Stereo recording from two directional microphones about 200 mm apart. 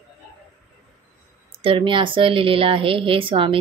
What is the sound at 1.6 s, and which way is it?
A woman's voice, 25° right (ahead or behind).